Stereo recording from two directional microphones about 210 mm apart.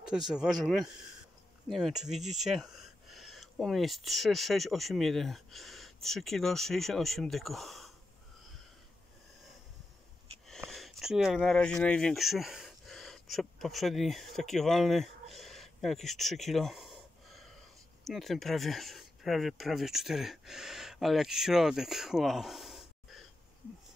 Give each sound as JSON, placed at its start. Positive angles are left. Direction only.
{"t": 0.1, "sound": "speech", "side_deg": -5}
{"t": 10.7, "sound": "speech", "side_deg": 0}